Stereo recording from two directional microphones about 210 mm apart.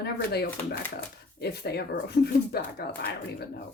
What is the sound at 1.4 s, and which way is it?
Speech, 50° left (ahead or behind).